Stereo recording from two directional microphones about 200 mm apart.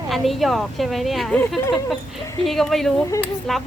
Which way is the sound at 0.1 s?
Centre (ahead or behind).